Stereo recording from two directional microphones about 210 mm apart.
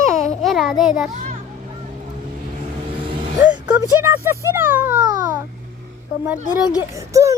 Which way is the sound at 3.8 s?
10° right (ahead or behind).